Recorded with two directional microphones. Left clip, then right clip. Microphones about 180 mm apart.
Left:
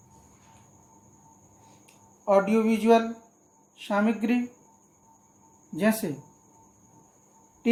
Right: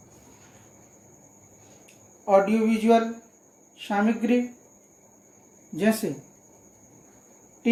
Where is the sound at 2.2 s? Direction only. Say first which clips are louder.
Right 2 dB; 40° left (ahead or behind).